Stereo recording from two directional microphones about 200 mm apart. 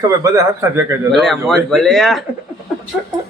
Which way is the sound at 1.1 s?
Centre (ahead or behind).